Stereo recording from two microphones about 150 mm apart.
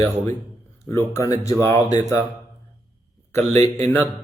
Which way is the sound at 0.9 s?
20° left (ahead or behind).